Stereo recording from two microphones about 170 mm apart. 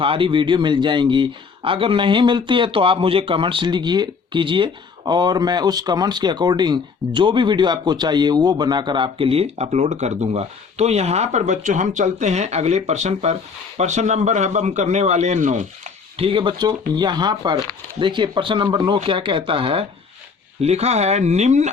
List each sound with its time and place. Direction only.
0.0 s a man's voice: 30° right (ahead or behind)